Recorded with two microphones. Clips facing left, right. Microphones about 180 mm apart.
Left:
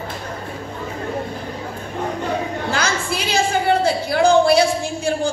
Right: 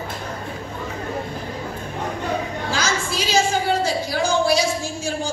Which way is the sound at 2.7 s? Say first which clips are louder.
Left 1 dB; 60° left (ahead or behind).